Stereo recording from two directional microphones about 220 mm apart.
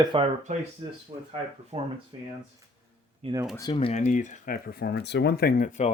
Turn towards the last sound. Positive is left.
turn(degrees=35)  # may be behind; listen again after turning